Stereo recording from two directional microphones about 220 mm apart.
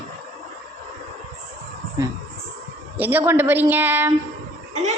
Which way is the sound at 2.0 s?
15° right (ahead or behind).